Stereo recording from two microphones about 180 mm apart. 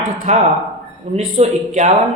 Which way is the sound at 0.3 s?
40° right (ahead or behind).